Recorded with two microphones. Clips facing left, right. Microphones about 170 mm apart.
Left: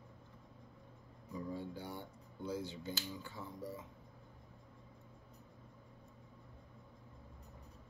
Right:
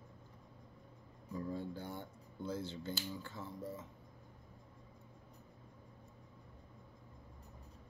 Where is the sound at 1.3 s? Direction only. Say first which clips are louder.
Right 1 dB; 15° left (ahead or behind).